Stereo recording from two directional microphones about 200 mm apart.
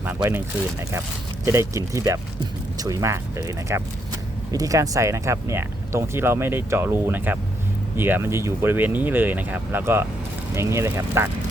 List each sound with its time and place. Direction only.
0.0 s speech: 10° right (ahead or behind)
1.5 s speech: 15° right (ahead or behind)